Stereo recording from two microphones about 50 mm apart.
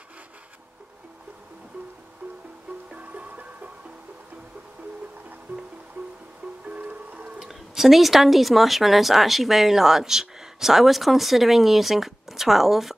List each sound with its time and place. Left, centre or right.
2.9 s music: right
6.7 s music: right
7.3 s speech: centre